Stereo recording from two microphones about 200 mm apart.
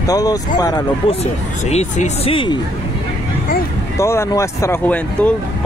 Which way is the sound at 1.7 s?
35° left (ahead or behind).